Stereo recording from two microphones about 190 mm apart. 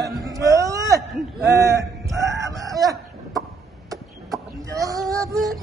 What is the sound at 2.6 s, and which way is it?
Chicken, 20° right (ahead or behind).